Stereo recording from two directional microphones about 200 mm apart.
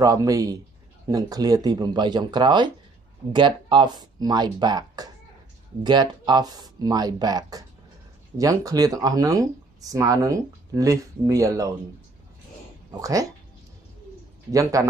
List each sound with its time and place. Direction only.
0.0 s speech: 20° right (ahead or behind)
13.0 s speech: 15° right (ahead or behind)
14.5 s speech: 15° right (ahead or behind)